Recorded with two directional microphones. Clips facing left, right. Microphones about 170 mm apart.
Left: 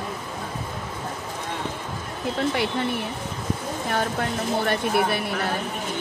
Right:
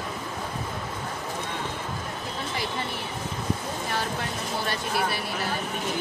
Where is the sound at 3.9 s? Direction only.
55° left (ahead or behind).